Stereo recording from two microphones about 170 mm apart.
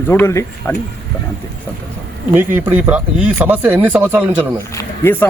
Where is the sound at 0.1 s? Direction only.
15° left (ahead or behind).